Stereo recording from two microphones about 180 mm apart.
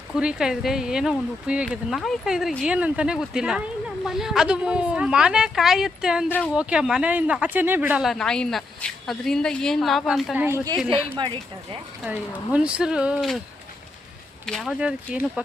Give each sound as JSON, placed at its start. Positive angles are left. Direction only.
{"t": 0.1, "sound": "speech", "side_deg": -5}
{"t": 10.4, "sound": "a woman's voice", "side_deg": -15}
{"t": 12.5, "sound": "speech", "side_deg": -5}
{"t": 14.4, "sound": "speech", "side_deg": 0}